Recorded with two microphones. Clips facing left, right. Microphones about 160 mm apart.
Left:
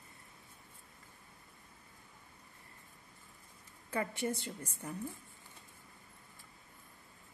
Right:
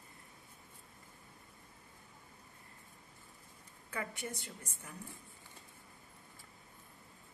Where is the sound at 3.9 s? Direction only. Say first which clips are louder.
Left 6 dB; 30° left (ahead or behind).